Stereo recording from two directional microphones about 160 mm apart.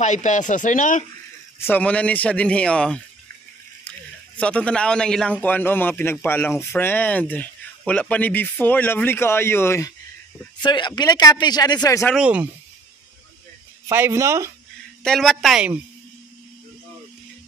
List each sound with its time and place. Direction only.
0.0 s speech: 50° left (ahead or behind)
1.6 s a man's voice: 10° left (ahead or behind)
4.4 s a man's voice: 5° left (ahead or behind)
12.2 s speech: 10° right (ahead or behind)
13.8 s speech: 15° right (ahead or behind)
15.0 s speech: centre (ahead or behind)